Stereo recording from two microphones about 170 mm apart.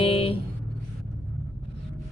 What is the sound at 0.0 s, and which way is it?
Vehicle, 35° left (ahead or behind).